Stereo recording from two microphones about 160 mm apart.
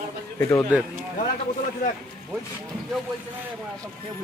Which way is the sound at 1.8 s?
55° left (ahead or behind).